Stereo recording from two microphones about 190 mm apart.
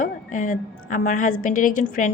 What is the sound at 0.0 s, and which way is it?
A woman's voice, 45° left (ahead or behind).